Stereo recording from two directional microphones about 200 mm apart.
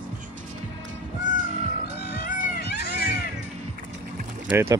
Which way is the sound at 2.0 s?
50° left (ahead or behind).